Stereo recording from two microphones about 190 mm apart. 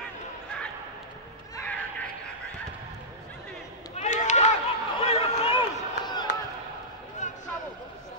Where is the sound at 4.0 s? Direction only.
40° left (ahead or behind).